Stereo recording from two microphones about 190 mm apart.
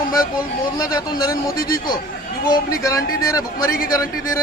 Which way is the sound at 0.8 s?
20° left (ahead or behind).